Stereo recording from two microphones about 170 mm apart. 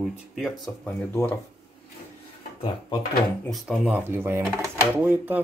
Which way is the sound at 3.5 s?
Centre (ahead or behind).